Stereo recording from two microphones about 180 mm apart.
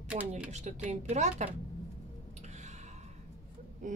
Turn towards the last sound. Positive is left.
turn(degrees=-45)  # may be behind; listen again after turning